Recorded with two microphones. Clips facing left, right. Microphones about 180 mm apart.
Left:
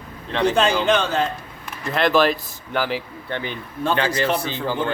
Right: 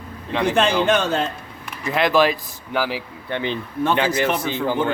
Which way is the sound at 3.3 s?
20° right (ahead or behind).